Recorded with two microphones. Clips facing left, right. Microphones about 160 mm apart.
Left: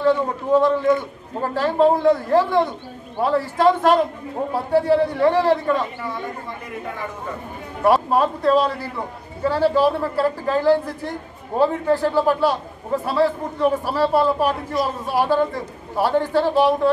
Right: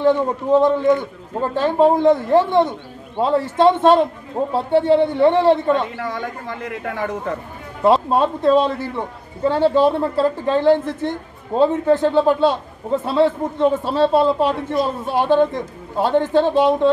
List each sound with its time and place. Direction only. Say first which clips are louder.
0.0 s a man's voice: right 2 dB; 20° right (ahead or behind)
5.9 s speech: right 3 dB; 90° right
7.8 s a man's voice: right 2 dB; 25° right (ahead or behind)